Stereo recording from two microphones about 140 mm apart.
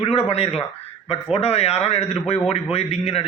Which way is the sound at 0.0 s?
45° left (ahead or behind).